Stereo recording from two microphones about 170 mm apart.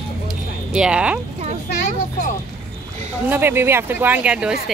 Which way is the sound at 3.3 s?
15° right (ahead or behind).